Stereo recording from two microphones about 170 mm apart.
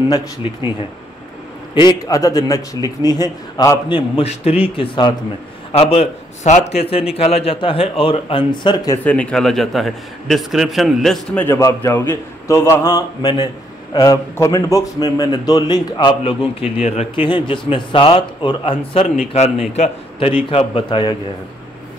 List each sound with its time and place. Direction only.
1.8 s a man's voice: 20° left (ahead or behind)
3.9 s a man's voice: 35° left (ahead or behind)
9.0 s a man's voice: 5° left (ahead or behind)
11.4 s a man's voice: 15° left (ahead or behind)